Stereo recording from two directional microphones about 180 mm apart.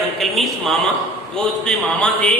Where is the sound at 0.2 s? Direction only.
Centre (ahead or behind).